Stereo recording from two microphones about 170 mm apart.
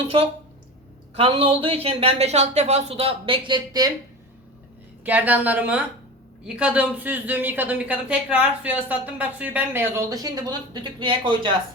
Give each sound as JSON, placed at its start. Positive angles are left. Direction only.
{"t": 1.1, "sound": "speech", "side_deg": -35}
{"t": 5.0, "sound": "a woman's voice", "side_deg": -10}